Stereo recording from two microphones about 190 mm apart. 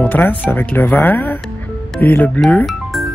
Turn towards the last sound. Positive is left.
turn(degrees=0)  # may be behind; listen again after turning